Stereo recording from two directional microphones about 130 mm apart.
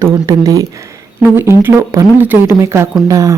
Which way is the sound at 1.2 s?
15° right (ahead or behind).